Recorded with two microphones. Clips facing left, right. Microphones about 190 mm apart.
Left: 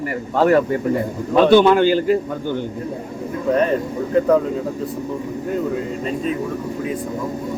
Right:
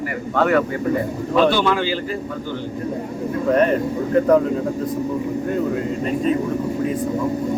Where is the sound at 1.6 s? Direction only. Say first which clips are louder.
Left 6 dB; 50° left (ahead or behind).